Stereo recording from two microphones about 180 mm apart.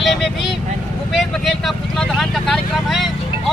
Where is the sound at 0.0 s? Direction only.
Centre (ahead or behind).